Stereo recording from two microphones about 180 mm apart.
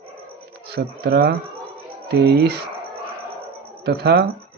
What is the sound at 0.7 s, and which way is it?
Speech, 60° right (ahead or behind).